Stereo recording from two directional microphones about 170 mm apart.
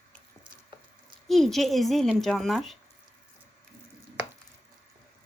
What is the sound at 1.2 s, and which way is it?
Speech, centre (ahead or behind).